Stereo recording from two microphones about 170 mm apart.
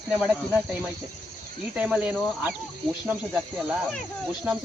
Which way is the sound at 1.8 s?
5° right (ahead or behind).